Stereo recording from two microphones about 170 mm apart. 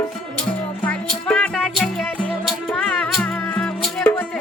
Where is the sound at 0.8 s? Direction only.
10° left (ahead or behind).